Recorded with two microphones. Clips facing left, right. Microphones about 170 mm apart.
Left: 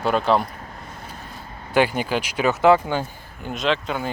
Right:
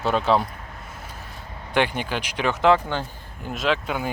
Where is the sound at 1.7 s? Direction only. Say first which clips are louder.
Left 4 dB; 5° left (ahead or behind).